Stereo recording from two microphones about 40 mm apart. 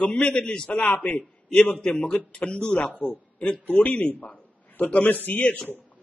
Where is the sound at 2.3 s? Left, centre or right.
Left.